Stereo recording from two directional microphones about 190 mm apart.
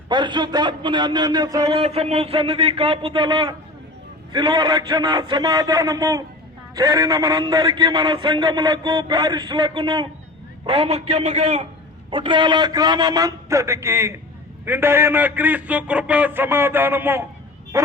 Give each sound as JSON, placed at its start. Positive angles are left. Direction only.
{"t": 0.1, "sound": "a man's voice", "side_deg": -25}
{"t": 1.8, "sound": "a man's voice", "side_deg": -35}
{"t": 12.1, "sound": "a man's voice", "side_deg": -25}